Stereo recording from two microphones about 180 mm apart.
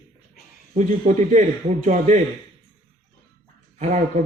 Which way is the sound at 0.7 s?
40° right (ahead or behind).